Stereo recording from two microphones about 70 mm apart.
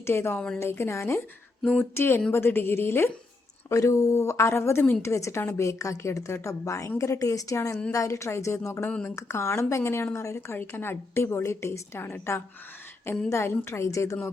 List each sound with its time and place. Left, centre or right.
0.0 s a woman's voice: left
0.3 s speech: centre
0.6 s a woman's voice: left
3.7 s a woman's voice: left
8.9 s speech: centre
9.1 s a woman's voice: left
13.3 s a woman's voice: left